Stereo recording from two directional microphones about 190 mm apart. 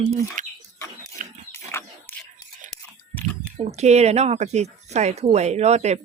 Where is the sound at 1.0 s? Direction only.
35° right (ahead or behind).